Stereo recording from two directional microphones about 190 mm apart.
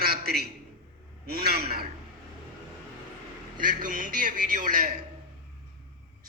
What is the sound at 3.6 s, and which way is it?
A man's voice, 45° right (ahead or behind).